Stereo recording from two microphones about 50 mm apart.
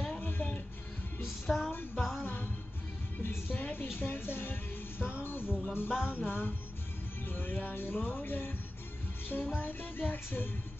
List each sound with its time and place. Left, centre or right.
0.2 s music: left
1.5 s music: centre
2.2 s music: left
3.2 s speech: left
6.0 s music: left